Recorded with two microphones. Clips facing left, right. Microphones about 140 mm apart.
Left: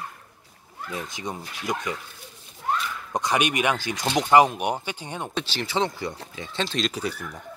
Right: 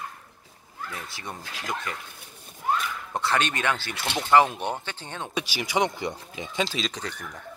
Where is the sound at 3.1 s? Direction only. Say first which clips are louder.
Left 3 dB; 15° left (ahead or behind).